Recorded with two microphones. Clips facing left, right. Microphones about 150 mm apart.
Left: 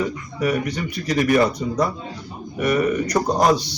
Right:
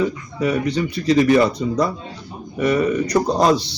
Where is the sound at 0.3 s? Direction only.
25° right (ahead or behind).